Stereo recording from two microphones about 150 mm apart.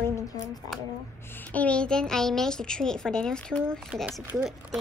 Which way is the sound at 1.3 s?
10° left (ahead or behind).